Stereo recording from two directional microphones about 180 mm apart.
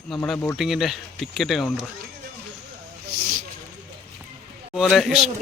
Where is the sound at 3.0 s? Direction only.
55° right (ahead or behind).